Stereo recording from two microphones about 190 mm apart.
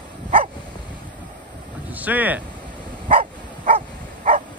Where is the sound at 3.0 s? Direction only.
35° right (ahead or behind).